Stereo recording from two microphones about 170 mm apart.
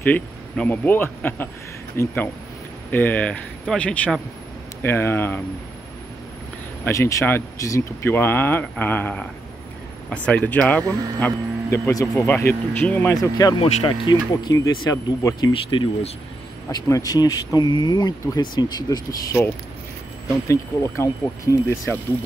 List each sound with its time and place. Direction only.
0.0 s speech: 10° left (ahead or behind)
6.8 s speech: 20° left (ahead or behind)
13.6 s speech: 30° left (ahead or behind)
16.6 s speech: 20° left (ahead or behind)